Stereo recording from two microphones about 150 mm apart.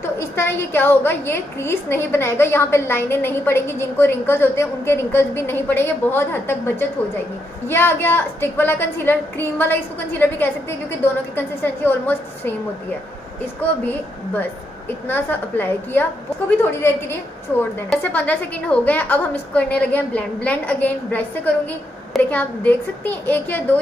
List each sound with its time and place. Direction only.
0.0 s a woman's voice: 15° left (ahead or behind)
13.6 s a woman's voice: 10° left (ahead or behind)